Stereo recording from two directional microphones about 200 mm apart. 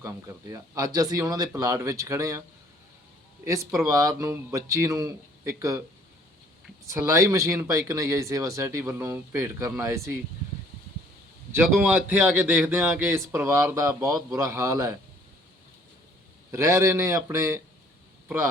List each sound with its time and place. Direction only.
0.0 s a man's voice: 15° right (ahead or behind)
3.4 s a man's voice: 15° right (ahead or behind)
6.8 s a man's voice: 15° right (ahead or behind)
11.5 s a man's voice: 10° right (ahead or behind)
16.5 s a man's voice: 15° right (ahead or behind)